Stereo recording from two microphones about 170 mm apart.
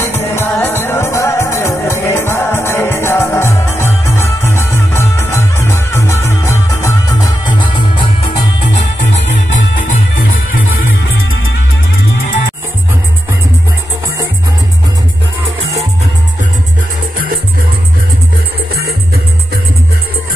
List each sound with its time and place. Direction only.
0.0 s music: 15° left (ahead or behind)
7.4 s music: 30° left (ahead or behind)
9.1 s music: 40° left (ahead or behind)
15.6 s music: 40° right (ahead or behind)
18.7 s music: 65° right (ahead or behind)